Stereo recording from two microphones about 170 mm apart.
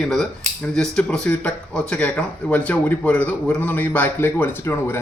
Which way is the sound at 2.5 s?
10° left (ahead or behind).